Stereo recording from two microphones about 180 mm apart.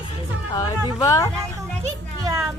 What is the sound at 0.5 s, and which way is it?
Speech, 20° left (ahead or behind).